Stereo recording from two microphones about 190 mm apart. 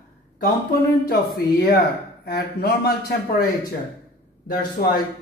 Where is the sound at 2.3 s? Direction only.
55° left (ahead or behind).